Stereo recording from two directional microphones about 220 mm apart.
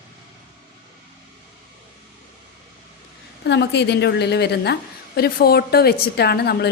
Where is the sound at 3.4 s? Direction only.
50° left (ahead or behind).